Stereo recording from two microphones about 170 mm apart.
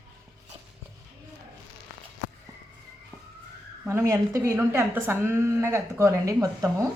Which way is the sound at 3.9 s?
15° right (ahead or behind).